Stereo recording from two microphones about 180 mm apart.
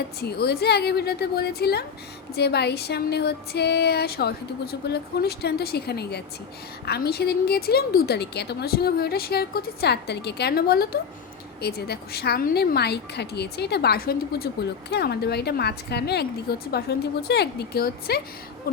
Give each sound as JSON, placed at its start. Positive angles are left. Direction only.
{"t": 0.2, "sound": "speech", "side_deg": 60}